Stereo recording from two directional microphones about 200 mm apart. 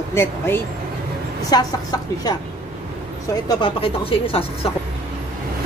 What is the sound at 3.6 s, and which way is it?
Speech, 25° left (ahead or behind).